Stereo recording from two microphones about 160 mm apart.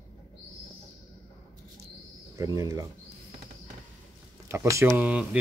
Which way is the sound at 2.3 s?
20° right (ahead or behind).